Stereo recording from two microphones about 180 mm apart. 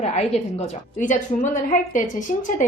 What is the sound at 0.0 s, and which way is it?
A woman's voice, 35° left (ahead or behind).